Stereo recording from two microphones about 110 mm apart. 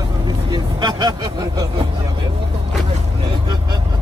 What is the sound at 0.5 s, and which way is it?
Vehicle, 40° right (ahead or behind).